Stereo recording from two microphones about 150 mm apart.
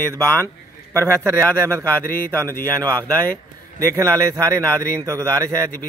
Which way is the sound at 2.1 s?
15° left (ahead or behind).